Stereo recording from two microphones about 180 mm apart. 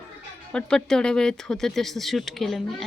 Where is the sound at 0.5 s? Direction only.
5° left (ahead or behind).